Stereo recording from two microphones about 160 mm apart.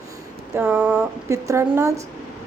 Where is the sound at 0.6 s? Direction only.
5° right (ahead or behind).